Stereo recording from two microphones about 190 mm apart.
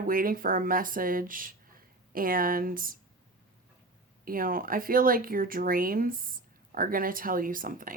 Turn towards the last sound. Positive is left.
turn(degrees=-45)  # may be behind; listen again after turning